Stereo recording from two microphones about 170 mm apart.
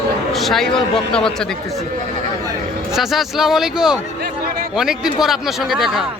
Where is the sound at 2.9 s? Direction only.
Centre (ahead or behind).